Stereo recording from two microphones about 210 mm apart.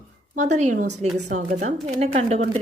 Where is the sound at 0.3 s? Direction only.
35° right (ahead or behind).